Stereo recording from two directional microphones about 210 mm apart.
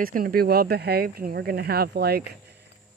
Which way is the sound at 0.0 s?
45° right (ahead or behind).